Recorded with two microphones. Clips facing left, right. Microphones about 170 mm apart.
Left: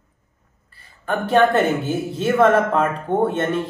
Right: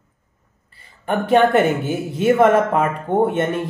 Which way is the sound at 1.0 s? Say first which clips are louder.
Right 1 dB; 15° right (ahead or behind).